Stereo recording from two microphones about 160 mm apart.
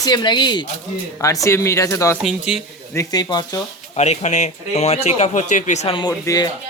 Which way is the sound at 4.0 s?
45° left (ahead or behind).